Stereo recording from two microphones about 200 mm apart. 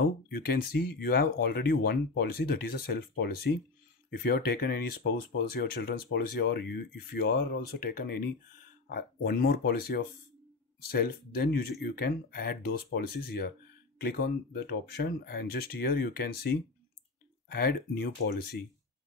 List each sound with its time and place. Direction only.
0.0 s speech: 50° left (ahead or behind)
6.0 s speech: 65° left (ahead or behind)